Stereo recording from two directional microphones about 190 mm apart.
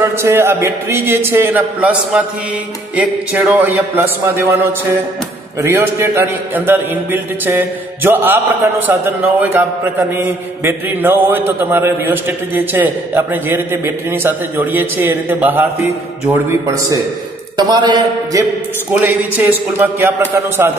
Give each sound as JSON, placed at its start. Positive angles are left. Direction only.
{"t": 0.0, "sound": "a man's voice", "side_deg": -15}
{"t": 3.3, "sound": "a man's voice", "side_deg": -5}
{"t": 5.6, "sound": "a man's voice", "side_deg": -15}
{"t": 18.9, "sound": "a man's voice", "side_deg": -10}